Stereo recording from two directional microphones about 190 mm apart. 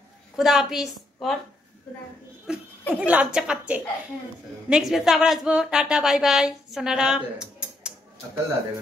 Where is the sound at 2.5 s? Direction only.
5° right (ahead or behind).